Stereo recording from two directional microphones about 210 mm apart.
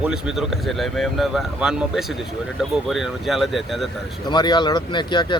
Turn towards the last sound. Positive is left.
turn(degrees=20)  # may be behind; listen again after turning